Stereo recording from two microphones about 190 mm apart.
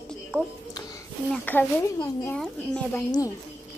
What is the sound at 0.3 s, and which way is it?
Speech, 10° left (ahead or behind).